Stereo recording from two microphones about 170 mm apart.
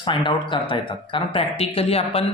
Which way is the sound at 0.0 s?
30° left (ahead or behind).